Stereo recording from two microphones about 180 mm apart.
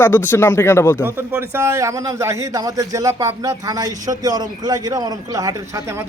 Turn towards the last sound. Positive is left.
turn(degrees=-20)  # may be behind; listen again after turning